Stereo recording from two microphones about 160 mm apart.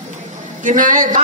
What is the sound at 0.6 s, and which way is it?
Speech, 55° right (ahead or behind).